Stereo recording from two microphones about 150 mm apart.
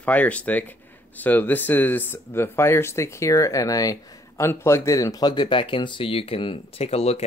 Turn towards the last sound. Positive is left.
turn(degrees=45)  # may be behind; listen again after turning